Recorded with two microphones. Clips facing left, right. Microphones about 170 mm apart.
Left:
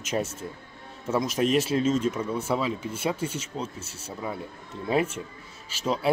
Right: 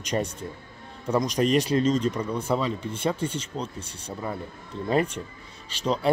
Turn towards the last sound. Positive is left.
turn(degrees=5)  # may be behind; listen again after turning